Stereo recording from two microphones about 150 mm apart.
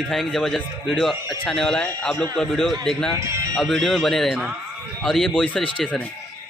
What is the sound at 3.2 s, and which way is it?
Speech, 20° right (ahead or behind).